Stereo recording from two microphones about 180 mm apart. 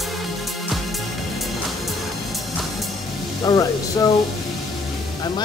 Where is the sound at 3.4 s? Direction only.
20° left (ahead or behind).